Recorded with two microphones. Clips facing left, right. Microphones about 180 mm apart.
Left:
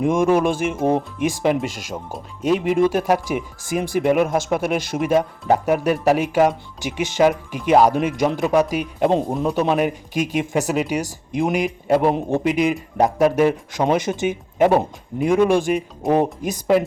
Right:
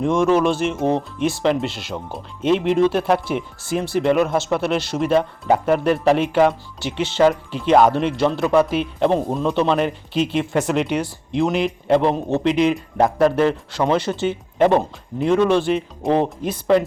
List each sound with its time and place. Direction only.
0.0 s a man's voice: 10° left (ahead or behind)